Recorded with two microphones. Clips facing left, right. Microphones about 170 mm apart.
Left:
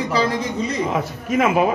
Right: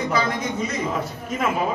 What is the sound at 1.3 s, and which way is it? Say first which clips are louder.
Speech: left 7 dB; 85° left.